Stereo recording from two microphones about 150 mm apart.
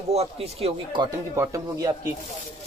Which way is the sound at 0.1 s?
45° right (ahead or behind).